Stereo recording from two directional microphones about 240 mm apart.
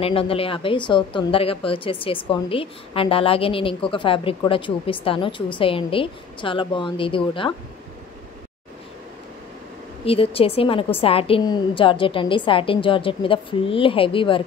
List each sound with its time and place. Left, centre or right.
0.0 s a woman's voice: left
10.0 s a woman's voice: left